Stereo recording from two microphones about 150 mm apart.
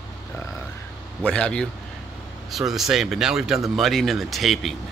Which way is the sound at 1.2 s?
5° left (ahead or behind).